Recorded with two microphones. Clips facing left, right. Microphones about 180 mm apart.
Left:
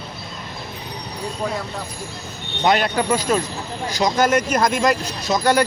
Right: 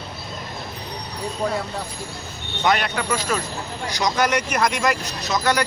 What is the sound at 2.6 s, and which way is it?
Speech, 30° left (ahead or behind).